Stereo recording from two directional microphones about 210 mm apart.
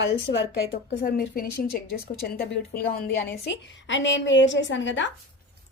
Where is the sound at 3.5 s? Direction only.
60° left (ahead or behind).